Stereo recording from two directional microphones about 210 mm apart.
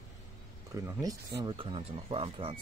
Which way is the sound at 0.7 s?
15° right (ahead or behind).